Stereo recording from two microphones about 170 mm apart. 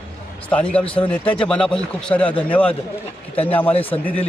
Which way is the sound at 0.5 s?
5° left (ahead or behind).